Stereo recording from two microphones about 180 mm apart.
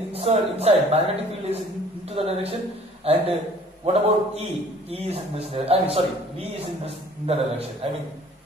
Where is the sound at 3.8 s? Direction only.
35° right (ahead or behind).